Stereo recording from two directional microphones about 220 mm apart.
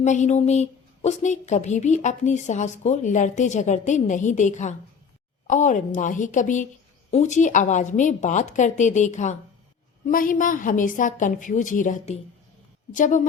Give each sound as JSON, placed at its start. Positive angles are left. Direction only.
{"t": 0.0, "sound": "a woman's voice", "side_deg": 30}